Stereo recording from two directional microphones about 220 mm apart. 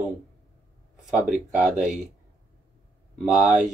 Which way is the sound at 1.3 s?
35° right (ahead or behind).